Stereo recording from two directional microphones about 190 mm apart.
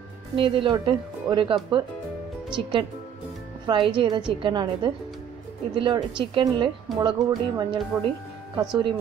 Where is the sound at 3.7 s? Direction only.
25° right (ahead or behind).